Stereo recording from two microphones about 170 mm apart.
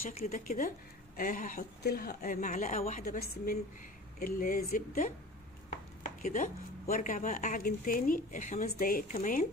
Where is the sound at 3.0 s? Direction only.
60° left (ahead or behind).